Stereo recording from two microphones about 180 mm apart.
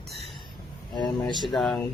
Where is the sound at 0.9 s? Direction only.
25° left (ahead or behind).